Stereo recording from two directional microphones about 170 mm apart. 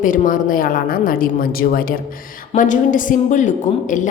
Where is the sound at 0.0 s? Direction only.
50° left (ahead or behind).